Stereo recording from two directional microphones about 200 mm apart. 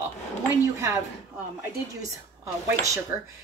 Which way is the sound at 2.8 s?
15° right (ahead or behind).